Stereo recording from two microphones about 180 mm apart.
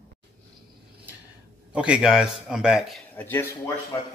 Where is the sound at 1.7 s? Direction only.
5° right (ahead or behind).